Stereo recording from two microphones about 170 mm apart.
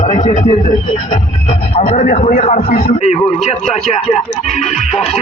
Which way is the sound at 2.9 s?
40° left (ahead or behind).